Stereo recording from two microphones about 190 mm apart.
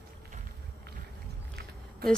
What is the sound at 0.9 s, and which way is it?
Boat, 55° right (ahead or behind).